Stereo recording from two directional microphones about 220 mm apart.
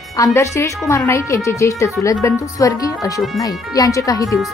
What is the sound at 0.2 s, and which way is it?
A woman's voice, 15° left (ahead or behind).